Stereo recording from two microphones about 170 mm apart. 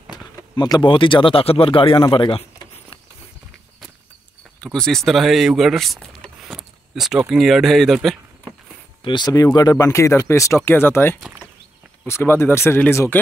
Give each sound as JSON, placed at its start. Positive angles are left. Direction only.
{"t": 0.1, "sound": "speech", "side_deg": 25}
{"t": 4.6, "sound": "speech", "side_deg": 5}
{"t": 6.2, "sound": "a sound", "side_deg": 0}
{"t": 9.0, "sound": "speech", "side_deg": 25}